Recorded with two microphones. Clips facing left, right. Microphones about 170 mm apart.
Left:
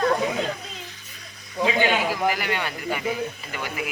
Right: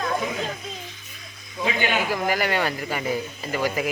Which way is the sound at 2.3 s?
40° right (ahead or behind).